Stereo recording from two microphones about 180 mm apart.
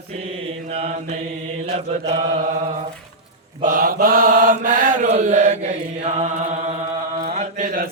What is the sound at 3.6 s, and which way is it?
Mantra, 50° right (ahead or behind).